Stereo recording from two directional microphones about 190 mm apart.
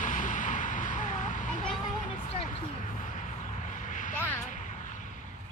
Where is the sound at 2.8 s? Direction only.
40° left (ahead or behind).